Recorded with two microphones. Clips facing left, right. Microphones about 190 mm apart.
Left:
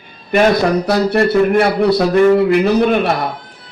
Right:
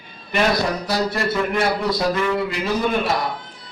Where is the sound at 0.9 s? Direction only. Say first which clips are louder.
Left 9 dB; 65° left (ahead or behind).